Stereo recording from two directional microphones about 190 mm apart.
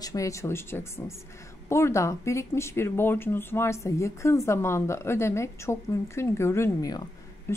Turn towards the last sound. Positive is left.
turn(degrees=15)  # may be behind; listen again after turning